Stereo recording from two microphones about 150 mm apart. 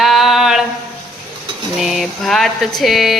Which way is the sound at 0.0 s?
Centre (ahead or behind).